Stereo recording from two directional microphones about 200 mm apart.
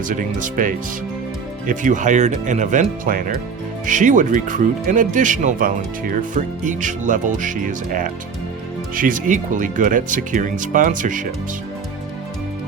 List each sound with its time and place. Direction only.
0.1 s speech: 40° right (ahead or behind)